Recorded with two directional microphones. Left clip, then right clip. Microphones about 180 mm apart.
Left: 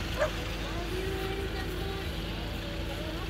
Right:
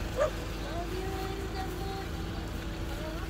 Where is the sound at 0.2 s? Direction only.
45° right (ahead or behind).